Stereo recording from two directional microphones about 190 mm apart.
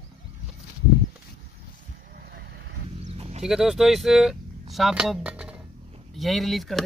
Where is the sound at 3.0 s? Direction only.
35° right (ahead or behind).